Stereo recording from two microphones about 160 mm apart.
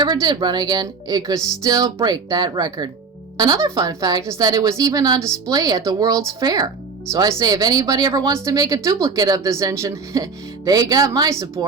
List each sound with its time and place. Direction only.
0.0 s a woman's voice: 25° right (ahead or behind)